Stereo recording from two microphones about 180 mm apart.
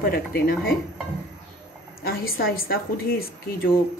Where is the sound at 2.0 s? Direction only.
55° left (ahead or behind).